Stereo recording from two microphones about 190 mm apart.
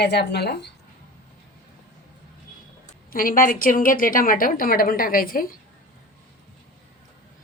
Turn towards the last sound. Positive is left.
turn(degrees=50)  # may be behind; listen again after turning